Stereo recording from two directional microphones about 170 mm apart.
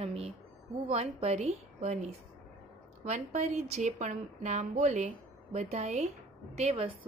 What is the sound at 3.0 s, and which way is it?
A woman's voice, 45° right (ahead or behind).